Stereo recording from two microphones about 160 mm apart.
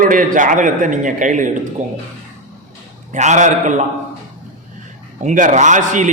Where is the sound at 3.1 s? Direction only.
50° right (ahead or behind).